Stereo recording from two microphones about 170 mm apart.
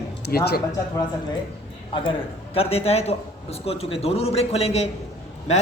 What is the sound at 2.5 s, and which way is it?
A man's voice, 35° left (ahead or behind).